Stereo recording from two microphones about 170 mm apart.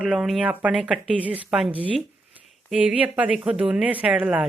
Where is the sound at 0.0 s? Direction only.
5° right (ahead or behind).